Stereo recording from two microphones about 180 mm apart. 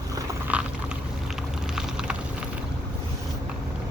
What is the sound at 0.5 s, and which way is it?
Vehicle, 10° right (ahead or behind).